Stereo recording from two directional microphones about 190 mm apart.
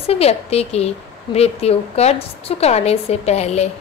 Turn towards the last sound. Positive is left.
turn(degrees=35)  # may be behind; listen again after turning